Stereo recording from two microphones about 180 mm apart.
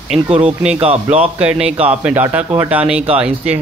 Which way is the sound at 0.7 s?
35° right (ahead or behind).